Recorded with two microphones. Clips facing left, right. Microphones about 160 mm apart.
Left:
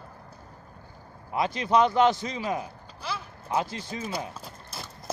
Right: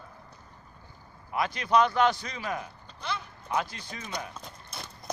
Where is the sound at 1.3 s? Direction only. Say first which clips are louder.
Left 2 dB; 25° left (ahead or behind).